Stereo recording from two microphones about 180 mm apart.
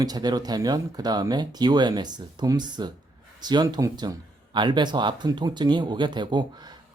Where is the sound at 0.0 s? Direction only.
20° right (ahead or behind).